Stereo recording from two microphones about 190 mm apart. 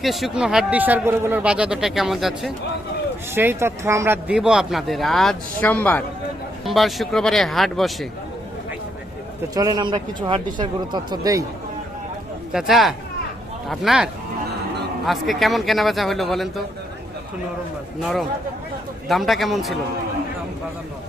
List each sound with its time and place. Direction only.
0.0 s speech: centre (ahead or behind)
3.3 s speech: 10° right (ahead or behind)
9.6 s a man's voice: 20° right (ahead or behind)
12.5 s speech: centre (ahead or behind)
18.0 s speech: centre (ahead or behind)